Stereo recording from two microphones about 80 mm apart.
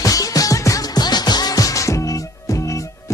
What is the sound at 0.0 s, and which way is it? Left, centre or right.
Music, left.